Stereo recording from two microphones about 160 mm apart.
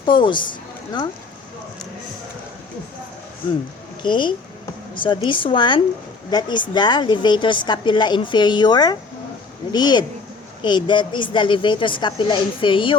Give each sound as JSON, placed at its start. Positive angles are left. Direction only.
{"t": 0.0, "sound": "a woman's voice", "side_deg": 30}
{"t": 4.0, "sound": "a woman's voice", "side_deg": 30}